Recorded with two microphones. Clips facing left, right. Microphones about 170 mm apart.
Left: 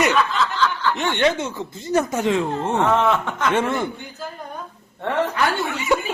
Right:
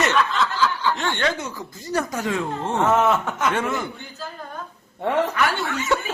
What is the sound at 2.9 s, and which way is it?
Speech, 5° right (ahead or behind).